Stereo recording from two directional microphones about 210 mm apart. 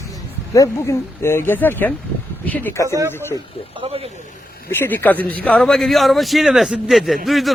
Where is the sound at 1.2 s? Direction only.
10° left (ahead or behind).